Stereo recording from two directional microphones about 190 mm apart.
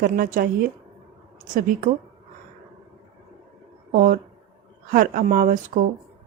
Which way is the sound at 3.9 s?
50° right (ahead or behind).